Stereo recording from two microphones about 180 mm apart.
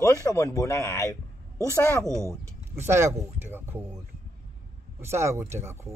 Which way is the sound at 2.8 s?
15° right (ahead or behind).